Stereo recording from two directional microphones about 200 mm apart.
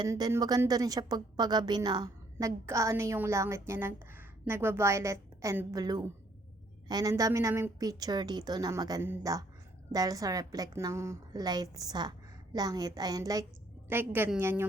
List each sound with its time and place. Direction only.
0.0 s a woman's voice: 20° right (ahead or behind)